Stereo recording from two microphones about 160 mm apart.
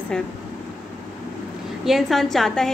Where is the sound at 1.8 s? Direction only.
Centre (ahead or behind).